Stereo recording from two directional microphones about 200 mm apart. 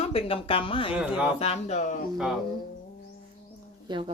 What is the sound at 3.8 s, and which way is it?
Speech, 25° right (ahead or behind).